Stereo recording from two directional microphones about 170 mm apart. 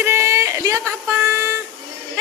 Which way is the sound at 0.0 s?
15° right (ahead or behind).